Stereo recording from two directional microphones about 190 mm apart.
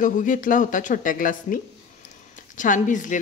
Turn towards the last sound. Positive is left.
turn(degrees=40)  # may be behind; listen again after turning